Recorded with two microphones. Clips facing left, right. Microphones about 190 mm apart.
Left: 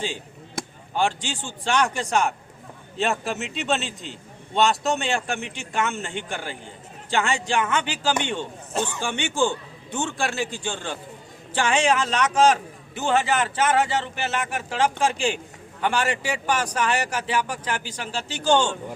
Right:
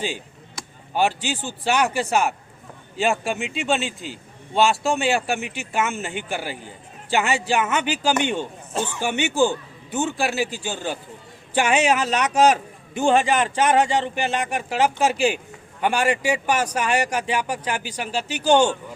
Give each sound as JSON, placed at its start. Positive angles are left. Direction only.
{"t": 0.9, "sound": "a man's voice", "side_deg": -10}
{"t": 9.3, "sound": "a man's voice", "side_deg": -40}
{"t": 9.9, "sound": "a man's voice", "side_deg": -5}